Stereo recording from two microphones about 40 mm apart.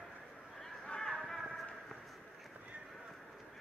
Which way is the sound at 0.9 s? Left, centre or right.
Centre.